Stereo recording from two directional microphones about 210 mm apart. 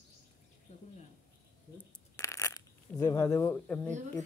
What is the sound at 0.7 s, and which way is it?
Bird, 30° left (ahead or behind).